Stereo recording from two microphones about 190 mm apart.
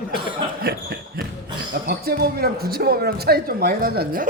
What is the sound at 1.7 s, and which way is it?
Speech, 55° right (ahead or behind).